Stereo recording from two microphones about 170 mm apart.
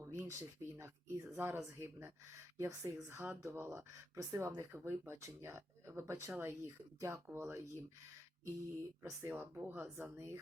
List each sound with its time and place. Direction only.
0.0 s speech: 15° right (ahead or behind)
9.0 s speech: 15° right (ahead or behind)